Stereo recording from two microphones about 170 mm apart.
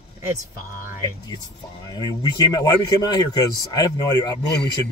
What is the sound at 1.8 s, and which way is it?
Speech, 25° left (ahead or behind).